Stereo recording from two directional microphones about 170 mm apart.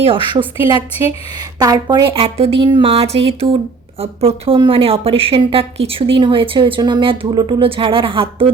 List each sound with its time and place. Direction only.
0.0 s a woman's voice: 30° right (ahead or behind)